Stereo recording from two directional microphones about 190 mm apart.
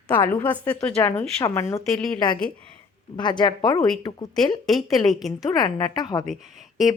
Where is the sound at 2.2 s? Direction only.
20° left (ahead or behind).